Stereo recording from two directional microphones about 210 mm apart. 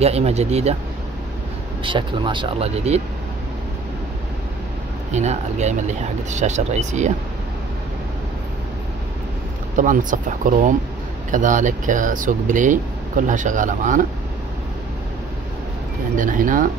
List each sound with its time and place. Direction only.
0.0 s speech: 30° right (ahead or behind)
1.8 s speech: 25° right (ahead or behind)
5.1 s speech: 35° right (ahead or behind)
9.8 s speech: 40° right (ahead or behind)
16.2 s speech: 40° right (ahead or behind)